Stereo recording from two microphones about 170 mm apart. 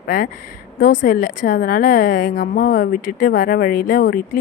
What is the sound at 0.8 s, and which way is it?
A woman's voice, 55° left (ahead or behind).